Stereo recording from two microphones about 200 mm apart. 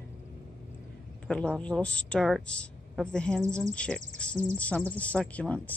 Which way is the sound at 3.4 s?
15° right (ahead or behind).